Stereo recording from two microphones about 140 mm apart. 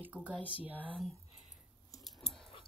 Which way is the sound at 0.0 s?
10° right (ahead or behind).